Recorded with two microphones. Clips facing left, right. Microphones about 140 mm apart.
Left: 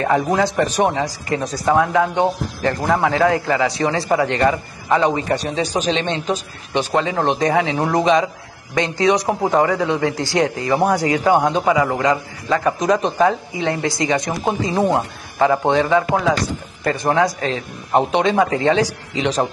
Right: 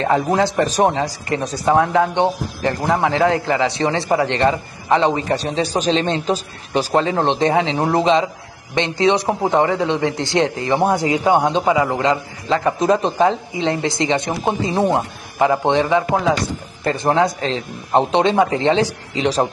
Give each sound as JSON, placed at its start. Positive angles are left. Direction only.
{"t": 0.0, "sound": "a man's voice", "side_deg": -25}